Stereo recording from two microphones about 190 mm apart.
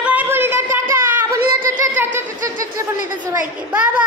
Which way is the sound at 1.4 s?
45° right (ahead or behind).